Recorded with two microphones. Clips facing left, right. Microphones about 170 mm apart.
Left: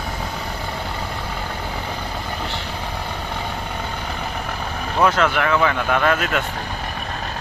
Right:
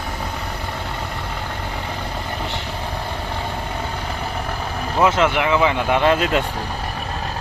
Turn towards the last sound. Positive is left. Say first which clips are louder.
# right 2 dB
turn(degrees=-30)  # may be behind; listen again after turning